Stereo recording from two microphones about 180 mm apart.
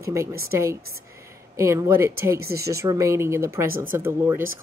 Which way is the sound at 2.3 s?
60° right (ahead or behind).